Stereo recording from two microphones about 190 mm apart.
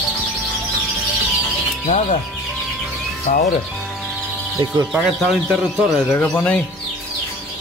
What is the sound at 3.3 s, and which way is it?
Speech, 40° left (ahead or behind).